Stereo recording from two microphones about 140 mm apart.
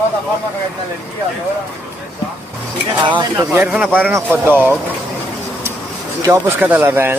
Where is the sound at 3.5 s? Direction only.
10° right (ahead or behind).